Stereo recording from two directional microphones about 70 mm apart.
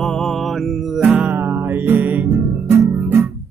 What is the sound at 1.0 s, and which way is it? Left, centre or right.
Music, right.